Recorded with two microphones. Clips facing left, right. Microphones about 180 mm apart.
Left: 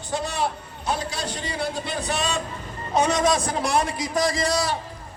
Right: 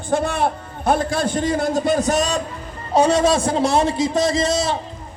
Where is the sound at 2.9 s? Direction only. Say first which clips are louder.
Right 5 dB; 30° right (ahead or behind).